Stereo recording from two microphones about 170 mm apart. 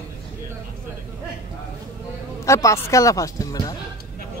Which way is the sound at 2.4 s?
20° left (ahead or behind).